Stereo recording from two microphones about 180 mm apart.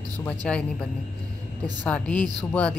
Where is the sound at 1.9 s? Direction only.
5° left (ahead or behind).